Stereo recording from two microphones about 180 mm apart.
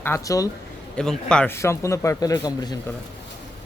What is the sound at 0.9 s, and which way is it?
Speech, 5° left (ahead or behind).